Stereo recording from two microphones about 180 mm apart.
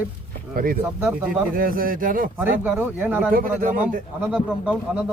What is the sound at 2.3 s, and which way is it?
Speech, 10° right (ahead or behind).